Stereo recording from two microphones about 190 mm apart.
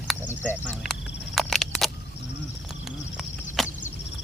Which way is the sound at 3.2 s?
Centre (ahead or behind).